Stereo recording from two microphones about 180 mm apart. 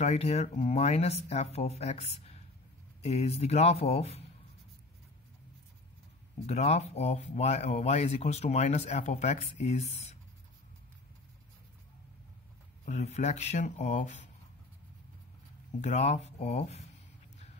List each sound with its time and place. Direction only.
0.0 s speech: 35° left (ahead or behind)
6.4 s speech: 35° left (ahead or behind)
12.8 s speech: 40° left (ahead or behind)
15.8 s speech: 40° left (ahead or behind)